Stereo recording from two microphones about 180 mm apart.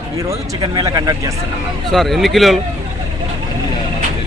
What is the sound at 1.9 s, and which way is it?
Speech, centre (ahead or behind).